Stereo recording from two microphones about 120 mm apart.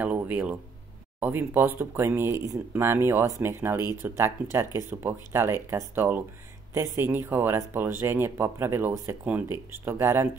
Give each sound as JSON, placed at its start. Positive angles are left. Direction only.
{"t": 0.0, "sound": "speech", "side_deg": -15}